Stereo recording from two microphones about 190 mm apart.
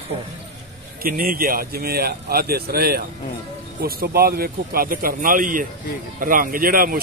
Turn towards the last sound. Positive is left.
turn(degrees=-50)  # may be behind; listen again after turning